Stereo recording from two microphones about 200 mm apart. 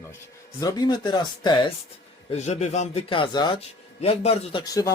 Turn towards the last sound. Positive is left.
turn(degrees=15)  # may be behind; listen again after turning